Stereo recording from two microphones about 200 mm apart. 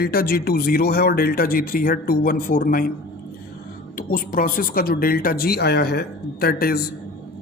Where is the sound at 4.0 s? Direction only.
45° left (ahead or behind).